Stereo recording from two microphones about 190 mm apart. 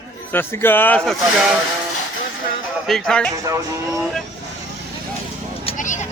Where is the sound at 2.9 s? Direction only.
5° left (ahead or behind).